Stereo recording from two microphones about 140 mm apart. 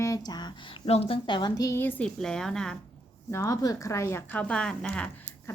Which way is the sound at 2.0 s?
5° left (ahead or behind).